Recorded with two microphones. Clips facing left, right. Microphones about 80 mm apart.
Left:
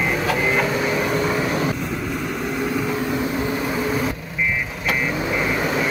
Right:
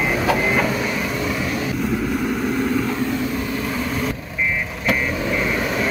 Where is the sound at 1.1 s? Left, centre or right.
Left.